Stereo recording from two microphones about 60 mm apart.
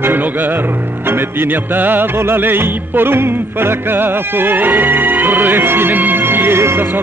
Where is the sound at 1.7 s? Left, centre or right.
Right.